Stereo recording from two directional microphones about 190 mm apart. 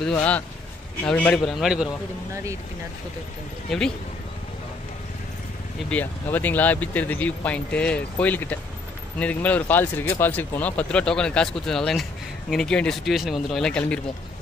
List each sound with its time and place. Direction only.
0.0 s speech: 5° left (ahead or behind)
5.9 s speech: 10° left (ahead or behind)